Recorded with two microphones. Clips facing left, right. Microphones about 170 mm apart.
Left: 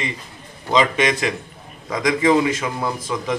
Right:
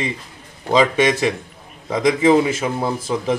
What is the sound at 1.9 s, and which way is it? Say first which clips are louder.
A man's voice: right 3 dB; 30° right (ahead or behind).